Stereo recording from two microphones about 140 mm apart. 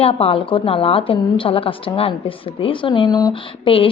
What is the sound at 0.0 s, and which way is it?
A woman's voice, 45° left (ahead or behind).